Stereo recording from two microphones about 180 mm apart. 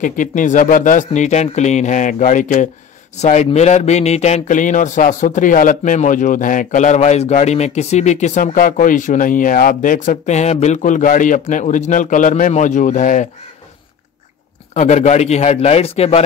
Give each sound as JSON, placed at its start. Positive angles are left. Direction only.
{"t": 0.0, "sound": "a man's voice", "side_deg": 45}
{"t": 14.7, "sound": "a man's voice", "side_deg": 40}